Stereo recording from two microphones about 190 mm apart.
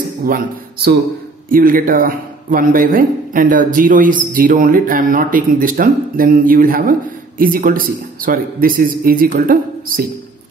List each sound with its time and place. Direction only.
1.5 s speech: 45° right (ahead or behind)